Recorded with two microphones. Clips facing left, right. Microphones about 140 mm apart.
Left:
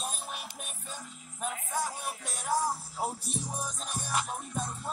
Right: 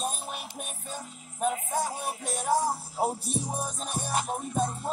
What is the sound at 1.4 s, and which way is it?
Music, 45° right (ahead or behind).